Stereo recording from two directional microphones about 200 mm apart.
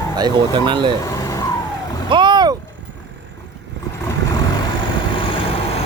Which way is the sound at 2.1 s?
25° right (ahead or behind).